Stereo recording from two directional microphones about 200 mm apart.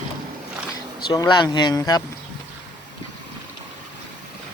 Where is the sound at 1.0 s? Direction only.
20° left (ahead or behind).